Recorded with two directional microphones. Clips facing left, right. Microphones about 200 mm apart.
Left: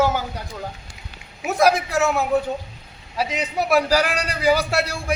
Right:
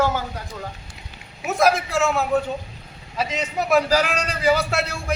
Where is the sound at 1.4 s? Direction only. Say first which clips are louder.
Left 1 dB; 15° left (ahead or behind).